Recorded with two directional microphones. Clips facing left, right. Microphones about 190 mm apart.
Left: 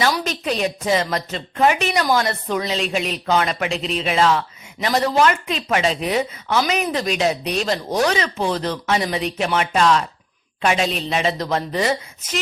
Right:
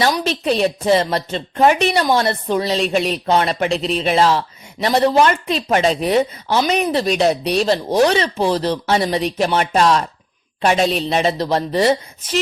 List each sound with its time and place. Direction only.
0.3 s a woman's voice: 30° right (ahead or behind)